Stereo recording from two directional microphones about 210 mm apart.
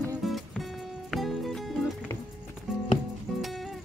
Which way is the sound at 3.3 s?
Centre (ahead or behind).